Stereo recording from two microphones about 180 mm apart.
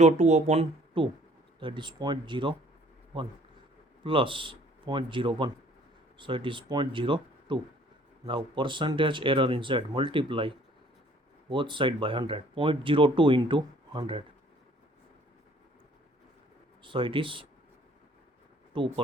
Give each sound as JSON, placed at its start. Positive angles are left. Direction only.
{"t": 0.0, "sound": "speech", "side_deg": -40}
{"t": 4.0, "sound": "speech", "side_deg": -30}
{"t": 16.8, "sound": "speech", "side_deg": -30}
{"t": 18.7, "sound": "speech", "side_deg": -25}